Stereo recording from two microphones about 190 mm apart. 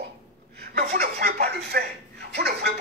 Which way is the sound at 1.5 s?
60° right (ahead or behind).